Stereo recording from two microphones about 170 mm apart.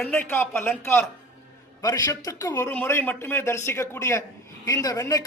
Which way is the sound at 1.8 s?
20° left (ahead or behind).